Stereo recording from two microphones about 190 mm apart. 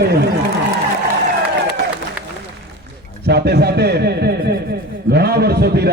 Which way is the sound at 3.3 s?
60° right (ahead or behind).